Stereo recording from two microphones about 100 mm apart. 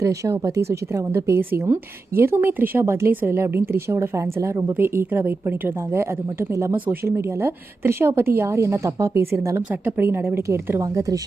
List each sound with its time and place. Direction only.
0.0 s speech: 30° right (ahead or behind)